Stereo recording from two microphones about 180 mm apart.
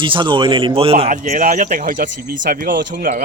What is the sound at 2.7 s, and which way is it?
Speech, 85° right.